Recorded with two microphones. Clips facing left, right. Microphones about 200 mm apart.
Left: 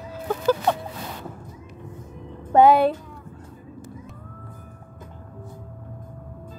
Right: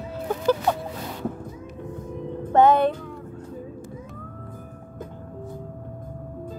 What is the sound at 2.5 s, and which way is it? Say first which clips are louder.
Music: left 2 dB; 10° left (ahead or behind).